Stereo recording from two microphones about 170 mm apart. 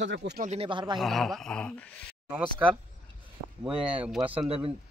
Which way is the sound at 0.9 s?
Centre (ahead or behind).